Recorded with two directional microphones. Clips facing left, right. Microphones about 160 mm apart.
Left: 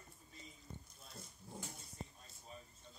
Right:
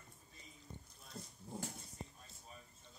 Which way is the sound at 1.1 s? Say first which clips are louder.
Right 5 dB; 20° right (ahead or behind).